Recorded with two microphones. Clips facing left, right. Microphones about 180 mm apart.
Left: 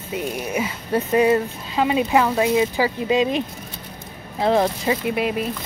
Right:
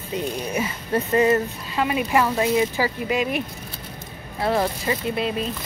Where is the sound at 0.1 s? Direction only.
10° left (ahead or behind).